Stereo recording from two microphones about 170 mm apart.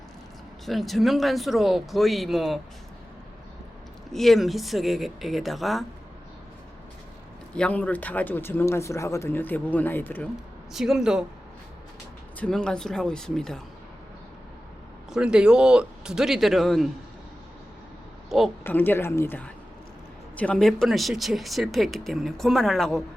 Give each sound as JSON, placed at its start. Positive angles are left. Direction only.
{"t": 0.6, "sound": "speech", "side_deg": 0}
{"t": 4.1, "sound": "speech", "side_deg": 0}
{"t": 7.5, "sound": "speech", "side_deg": 5}
{"t": 10.7, "sound": "speech", "side_deg": 0}
{"t": 12.4, "sound": "speech", "side_deg": 5}
{"t": 15.1, "sound": "speech", "side_deg": -5}
{"t": 18.3, "sound": "speech", "side_deg": 0}
{"t": 18.6, "sound": "speech", "side_deg": 10}